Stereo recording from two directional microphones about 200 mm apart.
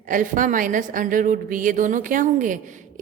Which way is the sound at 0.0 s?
40° right (ahead or behind).